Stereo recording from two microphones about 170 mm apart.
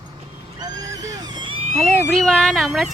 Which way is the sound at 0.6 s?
25° right (ahead or behind).